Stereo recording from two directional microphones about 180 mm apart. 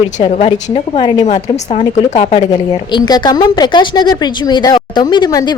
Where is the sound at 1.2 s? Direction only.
40° left (ahead or behind).